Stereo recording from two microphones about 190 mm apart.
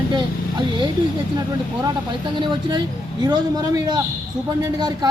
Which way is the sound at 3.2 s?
20° right (ahead or behind).